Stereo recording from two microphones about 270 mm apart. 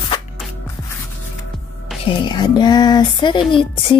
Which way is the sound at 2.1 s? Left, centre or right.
Centre.